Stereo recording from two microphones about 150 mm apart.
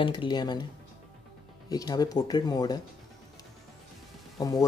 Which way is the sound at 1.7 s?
25° left (ahead or behind).